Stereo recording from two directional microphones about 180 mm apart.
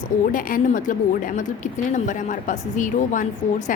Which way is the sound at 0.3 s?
50° left (ahead or behind).